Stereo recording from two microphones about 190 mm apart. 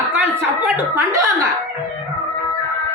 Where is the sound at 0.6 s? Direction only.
15° right (ahead or behind).